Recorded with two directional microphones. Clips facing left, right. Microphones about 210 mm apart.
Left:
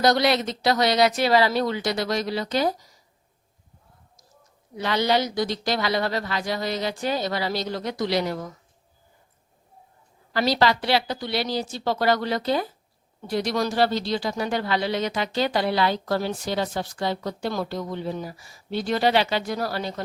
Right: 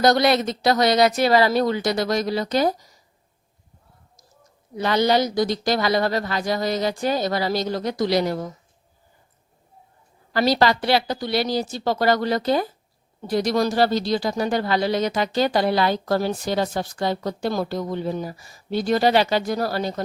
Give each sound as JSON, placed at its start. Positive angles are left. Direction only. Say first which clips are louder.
{"t": 0.0, "sound": "speech", "louder": "right 3 dB", "side_deg": -50}
{"t": 4.8, "sound": "speech", "louder": "right 3 dB", "side_deg": -45}
{"t": 10.3, "sound": "speech", "louder": "right 3 dB", "side_deg": -45}